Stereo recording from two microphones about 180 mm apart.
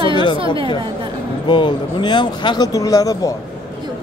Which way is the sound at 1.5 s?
25° left (ahead or behind).